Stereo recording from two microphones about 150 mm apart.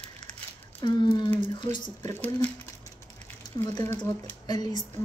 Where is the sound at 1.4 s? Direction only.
30° left (ahead or behind).